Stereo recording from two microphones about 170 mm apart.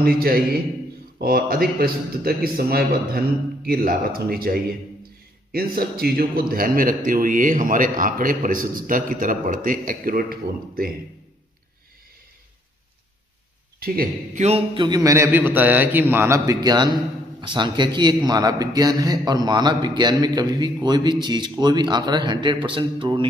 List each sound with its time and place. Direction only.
0.0 s a man's voice: 60° right (ahead or behind)
13.7 s a man's voice: 60° right (ahead or behind)
14.4 s a man's voice: 35° right (ahead or behind)